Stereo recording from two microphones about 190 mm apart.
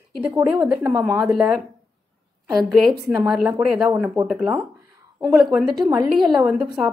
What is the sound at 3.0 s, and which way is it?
Speech, 15° right (ahead or behind).